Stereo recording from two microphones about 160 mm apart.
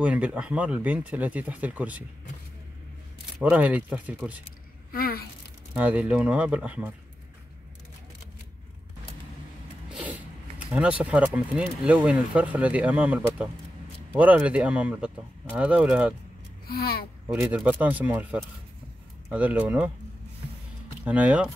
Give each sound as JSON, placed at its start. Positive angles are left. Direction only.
{"t": 0.0, "sound": "speech", "side_deg": -5}
{"t": 3.3, "sound": "speech", "side_deg": -10}
{"t": 4.9, "sound": "a sound", "side_deg": 75}
{"t": 5.7, "sound": "speech", "side_deg": -10}
{"t": 9.8, "sound": "speech", "side_deg": -10}
{"t": 16.6, "sound": "speech", "side_deg": 75}
{"t": 17.3, "sound": "speech", "side_deg": -10}
{"t": 21.0, "sound": "speech", "side_deg": -10}